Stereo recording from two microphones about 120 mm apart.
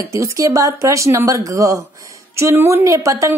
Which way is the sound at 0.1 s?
25° right (ahead or behind).